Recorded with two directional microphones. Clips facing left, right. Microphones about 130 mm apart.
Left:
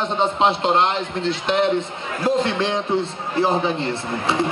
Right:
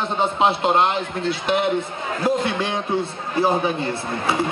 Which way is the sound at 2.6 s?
10° right (ahead or behind).